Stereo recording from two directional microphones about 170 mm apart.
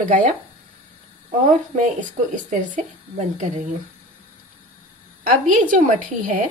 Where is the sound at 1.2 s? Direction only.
45° right (ahead or behind).